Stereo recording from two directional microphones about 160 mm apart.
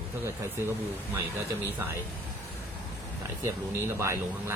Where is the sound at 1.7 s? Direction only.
15° right (ahead or behind).